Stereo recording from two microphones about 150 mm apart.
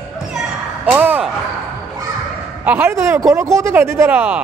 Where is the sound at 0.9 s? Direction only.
10° right (ahead or behind).